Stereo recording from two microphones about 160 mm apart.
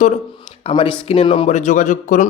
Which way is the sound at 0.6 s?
35° left (ahead or behind).